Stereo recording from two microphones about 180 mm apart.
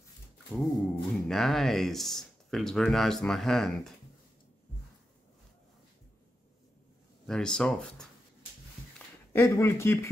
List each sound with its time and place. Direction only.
0.6 s speech: centre (ahead or behind)
7.2 s speech: 5° left (ahead or behind)
8.9 s a sound: 15° left (ahead or behind)